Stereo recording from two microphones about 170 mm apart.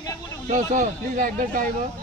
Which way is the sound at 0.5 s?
45° right (ahead or behind).